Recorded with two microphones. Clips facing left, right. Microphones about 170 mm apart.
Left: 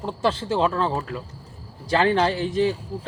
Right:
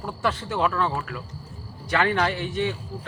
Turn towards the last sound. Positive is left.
turn(degrees=35)  # may be behind; listen again after turning